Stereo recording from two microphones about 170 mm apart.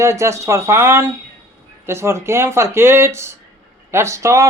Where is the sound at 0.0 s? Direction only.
15° right (ahead or behind).